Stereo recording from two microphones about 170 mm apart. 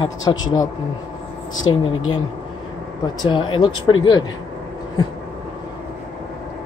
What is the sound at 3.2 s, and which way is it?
Speech, 30° left (ahead or behind).